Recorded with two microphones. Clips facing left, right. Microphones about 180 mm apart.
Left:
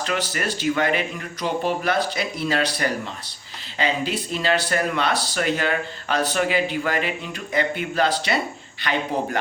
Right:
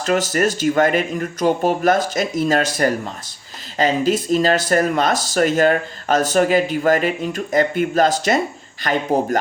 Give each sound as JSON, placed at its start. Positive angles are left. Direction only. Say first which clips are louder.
{"t": 0.0, "sound": "speech", "louder": "right 8 dB", "side_deg": -45}